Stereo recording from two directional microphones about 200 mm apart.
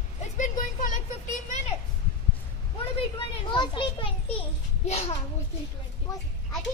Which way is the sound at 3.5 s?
25° left (ahead or behind).